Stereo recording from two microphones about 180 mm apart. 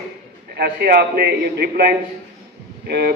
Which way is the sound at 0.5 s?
60° right (ahead or behind).